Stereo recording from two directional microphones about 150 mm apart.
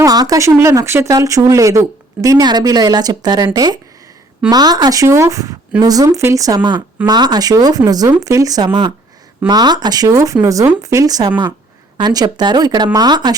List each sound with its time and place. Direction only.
0.0 s speech: 25° right (ahead or behind)